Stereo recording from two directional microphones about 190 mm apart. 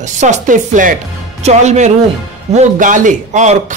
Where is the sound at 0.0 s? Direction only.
40° right (ahead or behind).